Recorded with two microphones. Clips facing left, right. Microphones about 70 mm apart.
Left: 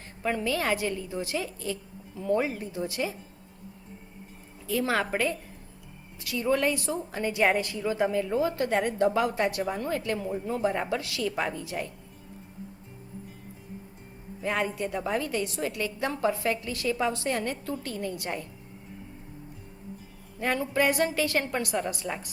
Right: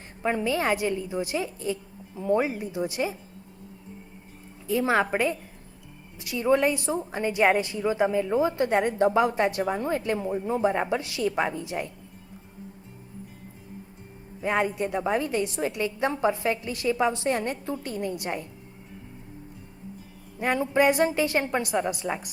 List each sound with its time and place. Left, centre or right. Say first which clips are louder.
0.2 s a woman's voice: right 3 dB; right
4.6 s a woman's voice: right 4 dB; right
14.4 s a woman's voice: right 3 dB; right
20.4 s a woman's voice: right 4 dB; right